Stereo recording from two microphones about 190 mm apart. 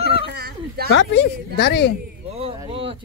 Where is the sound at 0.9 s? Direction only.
65° left (ahead or behind).